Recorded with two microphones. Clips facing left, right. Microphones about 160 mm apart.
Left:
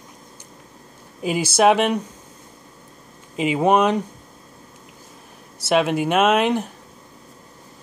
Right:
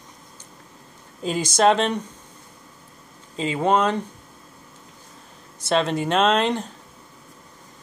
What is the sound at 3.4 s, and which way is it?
Speech, 15° left (ahead or behind).